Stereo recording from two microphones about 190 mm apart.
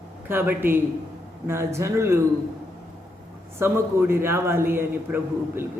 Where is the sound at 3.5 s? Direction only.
10° right (ahead or behind).